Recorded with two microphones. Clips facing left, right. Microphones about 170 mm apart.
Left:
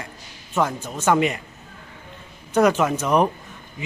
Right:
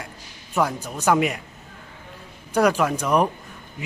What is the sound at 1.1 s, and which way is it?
Speech, centre (ahead or behind).